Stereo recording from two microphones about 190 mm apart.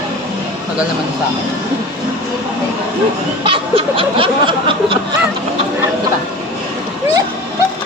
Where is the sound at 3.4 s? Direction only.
30° right (ahead or behind).